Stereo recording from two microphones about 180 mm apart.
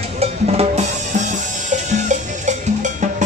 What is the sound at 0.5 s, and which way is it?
Drum, 35° right (ahead or behind).